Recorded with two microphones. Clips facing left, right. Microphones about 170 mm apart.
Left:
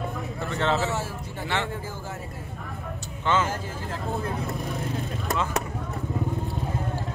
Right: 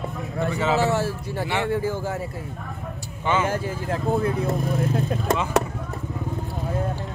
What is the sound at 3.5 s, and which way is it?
Speech, 65° right (ahead or behind).